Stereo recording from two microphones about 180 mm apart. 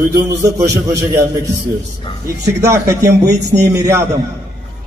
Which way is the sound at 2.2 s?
15° right (ahead or behind).